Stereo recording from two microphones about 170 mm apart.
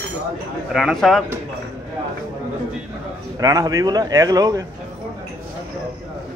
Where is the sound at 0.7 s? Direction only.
Centre (ahead or behind).